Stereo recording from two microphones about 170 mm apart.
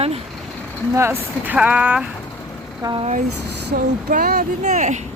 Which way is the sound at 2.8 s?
25° right (ahead or behind).